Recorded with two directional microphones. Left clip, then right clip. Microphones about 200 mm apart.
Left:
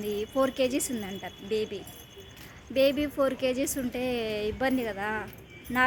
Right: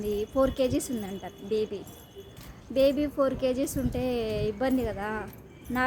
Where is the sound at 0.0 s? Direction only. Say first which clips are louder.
Right 1 dB; centre (ahead or behind).